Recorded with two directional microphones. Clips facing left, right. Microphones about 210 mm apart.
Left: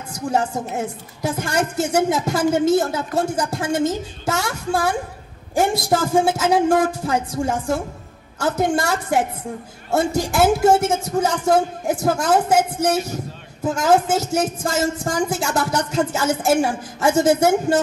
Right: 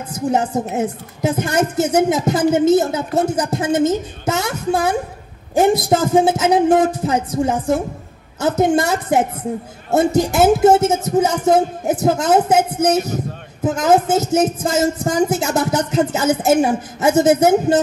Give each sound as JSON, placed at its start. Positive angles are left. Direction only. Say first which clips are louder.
{"t": 0.1, "sound": "a woman's voice", "louder": "right 3 dB", "side_deg": -20}